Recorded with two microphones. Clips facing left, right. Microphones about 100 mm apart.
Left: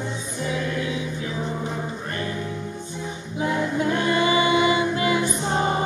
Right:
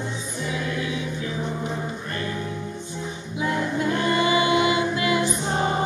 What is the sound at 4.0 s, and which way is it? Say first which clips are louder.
Music: even; 20° left (ahead or behind).